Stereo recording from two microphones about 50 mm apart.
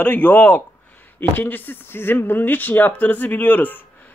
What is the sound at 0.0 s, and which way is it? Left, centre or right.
Speech, left.